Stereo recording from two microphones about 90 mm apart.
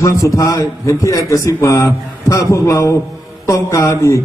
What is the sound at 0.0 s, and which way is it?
A man's voice, 40° left (ahead or behind).